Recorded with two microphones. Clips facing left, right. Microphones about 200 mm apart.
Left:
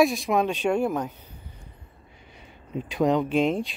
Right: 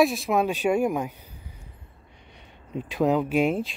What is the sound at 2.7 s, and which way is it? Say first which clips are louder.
Speech: even; centre (ahead or behind).